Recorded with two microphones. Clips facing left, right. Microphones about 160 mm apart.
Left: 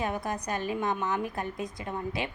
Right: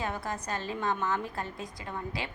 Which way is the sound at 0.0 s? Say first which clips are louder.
Left 3 dB; 20° left (ahead or behind).